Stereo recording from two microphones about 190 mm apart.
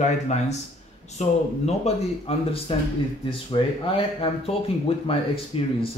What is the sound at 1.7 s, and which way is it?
Speech, 30° left (ahead or behind).